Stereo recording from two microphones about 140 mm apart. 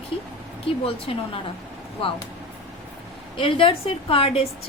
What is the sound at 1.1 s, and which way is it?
Speech, 45° left (ahead or behind).